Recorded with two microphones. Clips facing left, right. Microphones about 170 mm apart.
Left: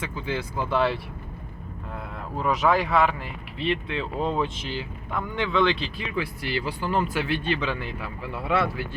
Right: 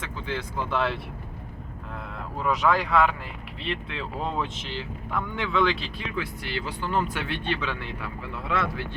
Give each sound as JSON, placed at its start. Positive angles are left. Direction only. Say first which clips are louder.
{"t": 0.0, "sound": "speech", "louder": "left 3 dB", "side_deg": 5}
{"t": 2.4, "sound": "speech", "louder": "left 1 dB", "side_deg": 0}